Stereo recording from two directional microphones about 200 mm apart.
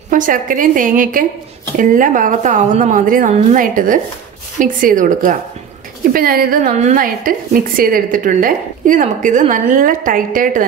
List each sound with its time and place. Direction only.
0.1 s a woman's voice: 40° right (ahead or behind)